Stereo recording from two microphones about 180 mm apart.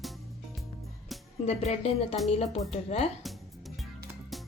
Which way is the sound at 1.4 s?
35° left (ahead or behind).